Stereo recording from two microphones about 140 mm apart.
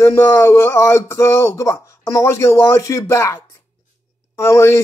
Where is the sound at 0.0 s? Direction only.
20° left (ahead or behind).